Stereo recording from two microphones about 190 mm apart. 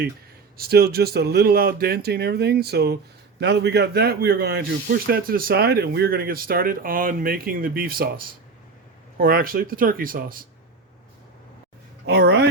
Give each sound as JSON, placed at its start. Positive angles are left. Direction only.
{"t": 0.5, "sound": "speech", "side_deg": -55}
{"t": 9.1, "sound": "speech", "side_deg": -50}
{"t": 12.0, "sound": "speech", "side_deg": -60}